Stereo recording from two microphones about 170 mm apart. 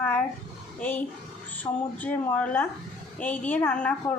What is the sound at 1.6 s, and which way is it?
Speech, 10° left (ahead or behind).